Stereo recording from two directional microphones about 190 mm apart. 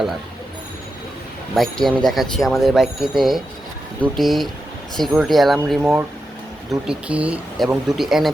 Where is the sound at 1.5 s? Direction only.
Centre (ahead or behind).